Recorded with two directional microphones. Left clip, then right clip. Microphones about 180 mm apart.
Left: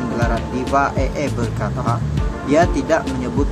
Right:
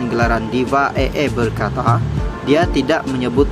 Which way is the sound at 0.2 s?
20° right (ahead or behind).